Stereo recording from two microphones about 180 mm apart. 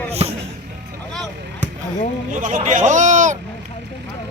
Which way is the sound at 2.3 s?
45° right (ahead or behind).